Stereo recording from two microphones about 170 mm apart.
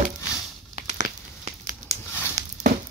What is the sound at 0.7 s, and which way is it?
Crumpling, 45° right (ahead or behind).